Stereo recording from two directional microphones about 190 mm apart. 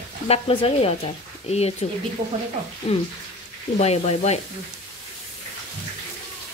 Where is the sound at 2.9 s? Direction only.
30° left (ahead or behind).